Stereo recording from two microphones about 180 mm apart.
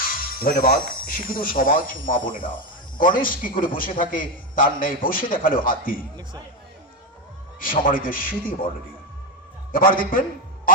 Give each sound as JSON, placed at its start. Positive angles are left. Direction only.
{"t": 0.0, "sound": "speech", "side_deg": 55}
{"t": 7.6, "sound": "speech", "side_deg": 50}
{"t": 9.7, "sound": "speech", "side_deg": 50}